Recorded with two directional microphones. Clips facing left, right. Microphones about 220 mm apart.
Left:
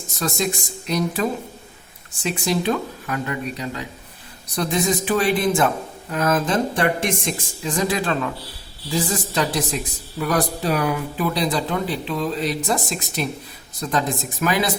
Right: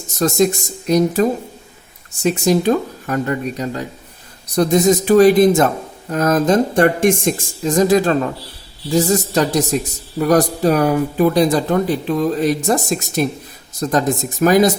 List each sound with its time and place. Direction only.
0.2 s speech: 45° right (ahead or behind)